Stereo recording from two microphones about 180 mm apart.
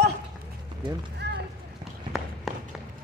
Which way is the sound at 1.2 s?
70° right (ahead or behind).